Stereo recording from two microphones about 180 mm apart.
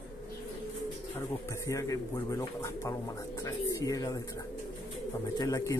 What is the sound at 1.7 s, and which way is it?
Speech, 15° left (ahead or behind).